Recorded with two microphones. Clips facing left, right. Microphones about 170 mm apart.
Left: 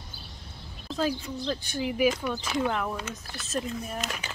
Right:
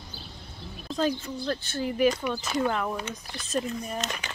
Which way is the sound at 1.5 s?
10° left (ahead or behind).